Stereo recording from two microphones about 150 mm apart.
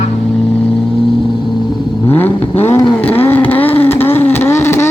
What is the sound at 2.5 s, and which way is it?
Vehicle, 45° left (ahead or behind).